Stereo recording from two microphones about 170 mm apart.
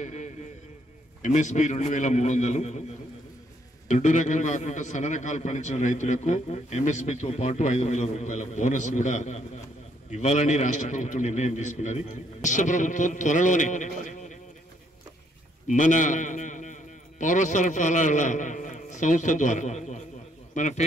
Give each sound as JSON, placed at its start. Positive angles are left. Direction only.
{"t": 0.0, "sound": "a man's voice", "side_deg": 45}
{"t": 3.9, "sound": "a man's voice", "side_deg": 45}
{"t": 15.6, "sound": "a man's voice", "side_deg": 45}